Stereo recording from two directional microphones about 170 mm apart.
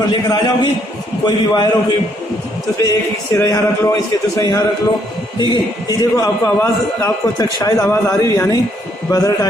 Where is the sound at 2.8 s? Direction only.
20° left (ahead or behind).